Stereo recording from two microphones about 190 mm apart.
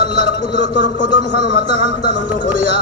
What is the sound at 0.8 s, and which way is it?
Speech, 70° left (ahead or behind).